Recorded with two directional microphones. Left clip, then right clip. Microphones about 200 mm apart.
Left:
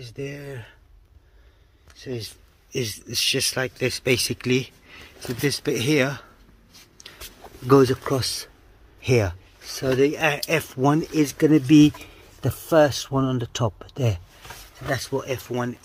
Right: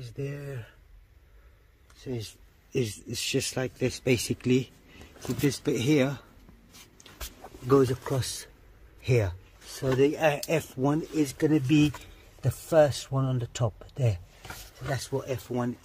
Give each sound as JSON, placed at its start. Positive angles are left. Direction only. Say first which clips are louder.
{"t": 0.0, "sound": "speech", "louder": "left 4 dB", "side_deg": 15}
{"t": 2.7, "sound": "speech", "louder": "left 4 dB", "side_deg": 0}
{"t": 7.0, "sound": "dog", "louder": "left 10 dB", "side_deg": 10}
{"t": 7.4, "sound": "a man's voice", "louder": "left 6 dB", "side_deg": 25}
{"t": 9.8, "sound": "speech", "louder": "left 4 dB", "side_deg": 15}
{"t": 10.9, "sound": "a man's voice", "louder": "left 7 dB", "side_deg": 30}
{"t": 11.3, "sound": "speech", "louder": "left 9 dB", "side_deg": 40}
{"t": 15.2, "sound": "a man's voice", "louder": "left 5 dB", "side_deg": 20}